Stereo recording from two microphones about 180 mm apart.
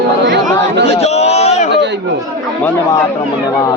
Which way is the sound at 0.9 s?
35° left (ahead or behind).